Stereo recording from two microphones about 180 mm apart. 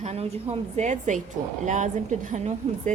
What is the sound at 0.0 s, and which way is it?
A woman's voice, 35° right (ahead or behind).